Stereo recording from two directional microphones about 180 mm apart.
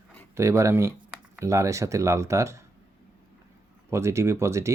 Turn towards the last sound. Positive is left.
turn(degrees=-15)  # may be behind; listen again after turning